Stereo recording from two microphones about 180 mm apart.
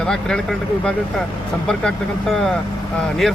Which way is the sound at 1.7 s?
5° left (ahead or behind).